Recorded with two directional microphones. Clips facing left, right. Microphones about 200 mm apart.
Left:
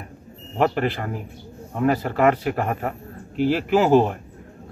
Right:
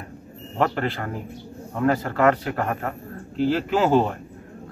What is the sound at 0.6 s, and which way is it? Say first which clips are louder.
A man's voice: left 2 dB; 10° left (ahead or behind).